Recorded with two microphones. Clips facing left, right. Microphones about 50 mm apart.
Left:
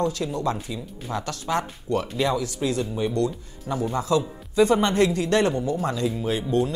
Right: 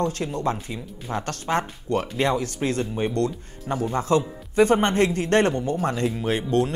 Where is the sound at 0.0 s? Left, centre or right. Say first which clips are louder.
Even; right.